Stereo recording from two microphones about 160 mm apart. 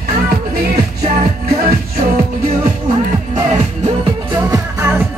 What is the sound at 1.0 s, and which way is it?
Music, 55° right (ahead or behind).